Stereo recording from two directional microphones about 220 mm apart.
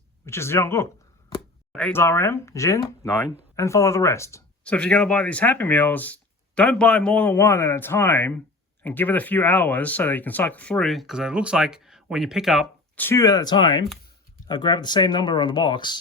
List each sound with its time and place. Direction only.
0.3 s speech: 10° left (ahead or behind)
13.1 s speech: 15° left (ahead or behind)